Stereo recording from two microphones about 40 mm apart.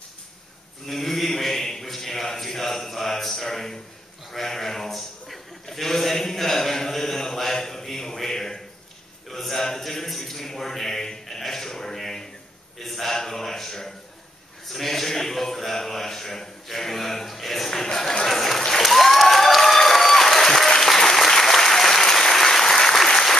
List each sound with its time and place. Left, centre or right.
0.8 s speech: centre
4.3 s bleat: centre
9.3 s a sound: centre
12.8 s a man's voice: centre
18.8 s applause: centre